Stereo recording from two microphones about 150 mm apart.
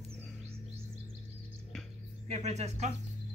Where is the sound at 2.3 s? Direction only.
50° right (ahead or behind).